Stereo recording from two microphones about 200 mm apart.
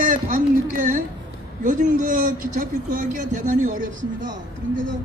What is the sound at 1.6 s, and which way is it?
A man's voice, 40° right (ahead or behind).